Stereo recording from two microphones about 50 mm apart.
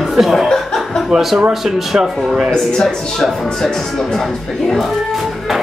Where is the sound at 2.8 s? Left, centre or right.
Centre.